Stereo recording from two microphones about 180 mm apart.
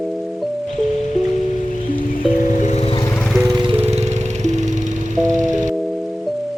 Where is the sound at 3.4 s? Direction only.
20° right (ahead or behind); by 5.3 s 45° right (ahead or behind).